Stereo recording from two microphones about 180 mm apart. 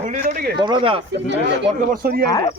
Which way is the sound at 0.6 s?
25° right (ahead or behind).